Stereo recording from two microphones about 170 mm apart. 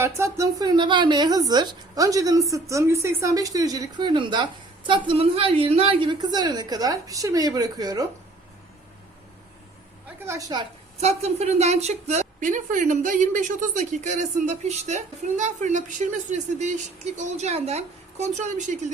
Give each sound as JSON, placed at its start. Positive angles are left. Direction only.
{"t": 0.0, "sound": "a woman's voice", "side_deg": -15}
{"t": 10.2, "sound": "a woman's voice", "side_deg": -20}
{"t": 11.0, "sound": "a woman's voice", "side_deg": -40}